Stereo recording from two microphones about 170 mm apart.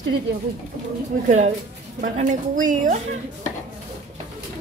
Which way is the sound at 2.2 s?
50° right (ahead or behind).